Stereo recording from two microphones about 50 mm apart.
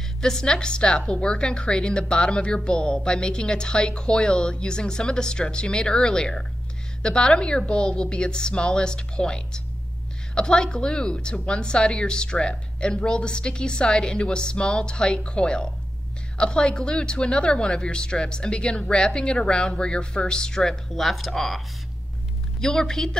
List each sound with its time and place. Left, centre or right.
0.2 s a woman's voice: centre